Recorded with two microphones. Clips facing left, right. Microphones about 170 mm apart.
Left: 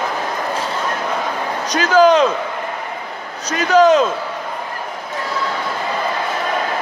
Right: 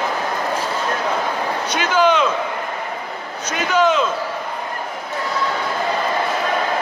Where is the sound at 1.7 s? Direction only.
40° left (ahead or behind).